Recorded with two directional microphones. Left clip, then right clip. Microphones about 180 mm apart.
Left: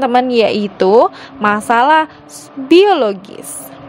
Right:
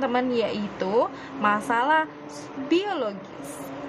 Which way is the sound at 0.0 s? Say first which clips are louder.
Left 13 dB; 45° left (ahead or behind).